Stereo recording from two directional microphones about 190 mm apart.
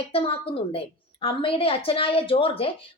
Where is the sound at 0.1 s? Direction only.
30° left (ahead or behind).